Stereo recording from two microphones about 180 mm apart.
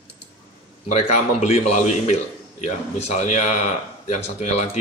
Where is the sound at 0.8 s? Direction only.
40° left (ahead or behind).